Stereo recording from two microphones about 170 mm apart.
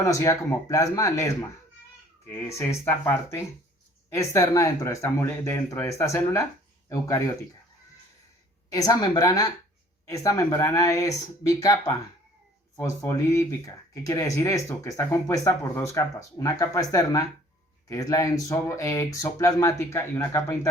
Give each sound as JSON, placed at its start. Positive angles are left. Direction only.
{"t": 0.0, "sound": "speech", "side_deg": 15}
{"t": 8.7, "sound": "speech", "side_deg": 20}